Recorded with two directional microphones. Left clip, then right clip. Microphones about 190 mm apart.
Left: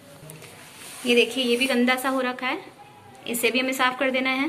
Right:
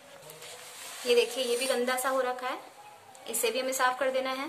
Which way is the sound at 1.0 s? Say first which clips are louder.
Left 5 dB; 10° left (ahead or behind).